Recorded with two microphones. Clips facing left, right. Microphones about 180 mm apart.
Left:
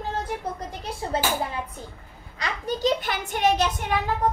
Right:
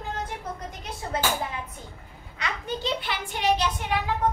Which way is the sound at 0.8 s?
30° left (ahead or behind).